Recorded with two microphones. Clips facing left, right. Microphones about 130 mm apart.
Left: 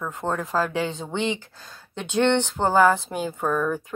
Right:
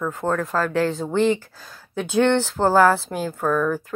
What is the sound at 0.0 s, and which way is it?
Speech, centre (ahead or behind).